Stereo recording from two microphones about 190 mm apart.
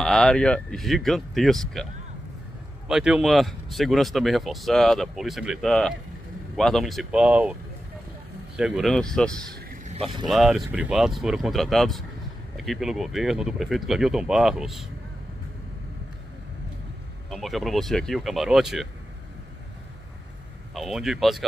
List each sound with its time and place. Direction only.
0.0 s speech: 5° left (ahead or behind)
2.9 s speech: centre (ahead or behind)
8.5 s speech: 5° right (ahead or behind)
9.5 s a sound: 50° right (ahead or behind)
10.2 s speech: centre (ahead or behind)
17.3 s speech: centre (ahead or behind)
20.7 s speech: centre (ahead or behind)